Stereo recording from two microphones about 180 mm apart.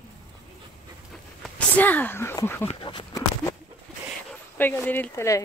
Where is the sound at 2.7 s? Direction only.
25° left (ahead or behind).